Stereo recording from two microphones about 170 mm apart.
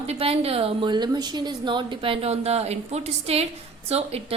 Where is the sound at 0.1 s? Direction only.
35° right (ahead or behind).